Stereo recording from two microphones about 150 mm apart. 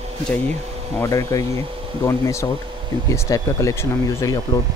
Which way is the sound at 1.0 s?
20° left (ahead or behind).